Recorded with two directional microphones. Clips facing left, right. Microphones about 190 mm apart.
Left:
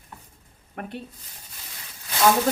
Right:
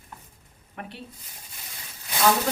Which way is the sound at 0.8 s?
50° left (ahead or behind).